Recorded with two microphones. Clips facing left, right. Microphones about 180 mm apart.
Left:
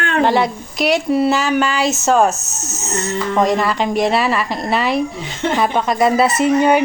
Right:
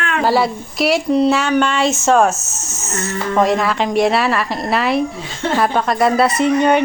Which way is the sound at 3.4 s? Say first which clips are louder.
Right 1 dB; centre (ahead or behind).